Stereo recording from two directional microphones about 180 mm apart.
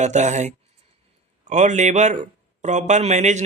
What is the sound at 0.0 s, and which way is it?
Speech, 40° right (ahead or behind).